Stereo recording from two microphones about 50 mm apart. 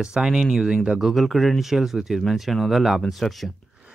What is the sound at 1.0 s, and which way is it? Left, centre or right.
Speech, centre.